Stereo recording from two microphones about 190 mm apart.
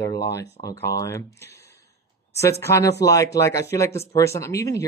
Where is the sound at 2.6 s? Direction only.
15° left (ahead or behind).